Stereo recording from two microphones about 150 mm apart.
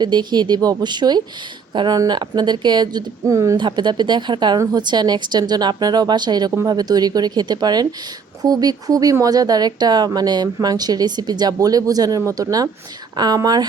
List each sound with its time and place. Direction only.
0.0 s speech: 30° right (ahead or behind)